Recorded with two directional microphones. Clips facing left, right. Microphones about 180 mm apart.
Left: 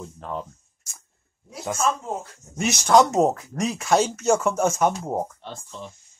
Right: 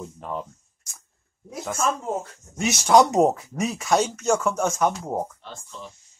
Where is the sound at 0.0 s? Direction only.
5° right (ahead or behind).